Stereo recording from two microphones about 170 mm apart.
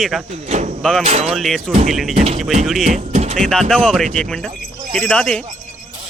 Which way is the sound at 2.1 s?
35° right (ahead or behind).